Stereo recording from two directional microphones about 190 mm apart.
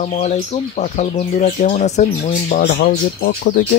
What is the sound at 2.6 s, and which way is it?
Speech, 50° left (ahead or behind).